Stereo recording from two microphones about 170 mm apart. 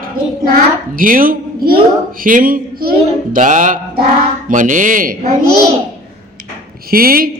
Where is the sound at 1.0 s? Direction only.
55° right (ahead or behind).